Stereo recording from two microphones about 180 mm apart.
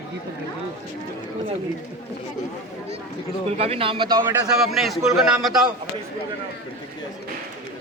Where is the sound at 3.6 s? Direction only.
30° right (ahead or behind).